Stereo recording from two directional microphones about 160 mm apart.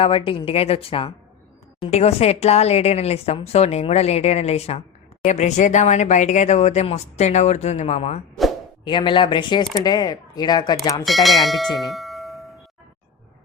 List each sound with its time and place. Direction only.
0.0 s speech: 35° left (ahead or behind)
8.8 s speech: 30° left (ahead or behind)
11.0 s bell: centre (ahead or behind)